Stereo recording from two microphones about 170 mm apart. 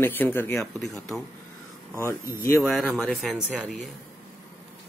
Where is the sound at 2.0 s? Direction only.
15° left (ahead or behind).